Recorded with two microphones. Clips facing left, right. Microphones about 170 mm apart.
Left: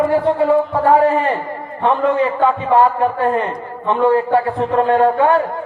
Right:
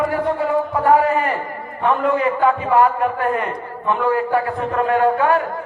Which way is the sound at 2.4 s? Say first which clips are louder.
Left 1 dB; 30° left (ahead or behind).